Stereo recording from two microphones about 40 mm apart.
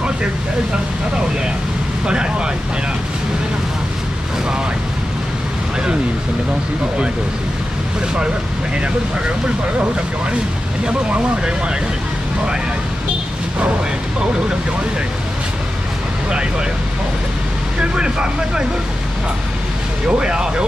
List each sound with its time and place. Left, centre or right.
2.0 s speech: right
10.9 s speech: right
17.7 s speech: right
20.1 s speech: right